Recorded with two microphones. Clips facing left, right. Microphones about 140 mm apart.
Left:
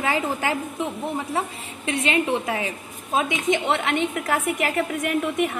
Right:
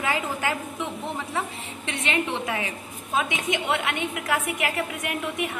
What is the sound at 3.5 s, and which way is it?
A woman's voice, 50° left (ahead or behind).